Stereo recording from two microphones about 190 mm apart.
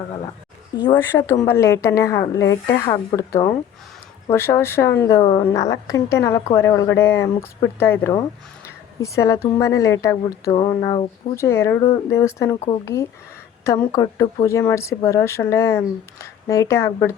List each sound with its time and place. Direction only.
0.9 s a woman's voice: 15° left (ahead or behind)